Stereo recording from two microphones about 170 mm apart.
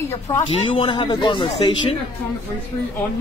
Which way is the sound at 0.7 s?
30° left (ahead or behind).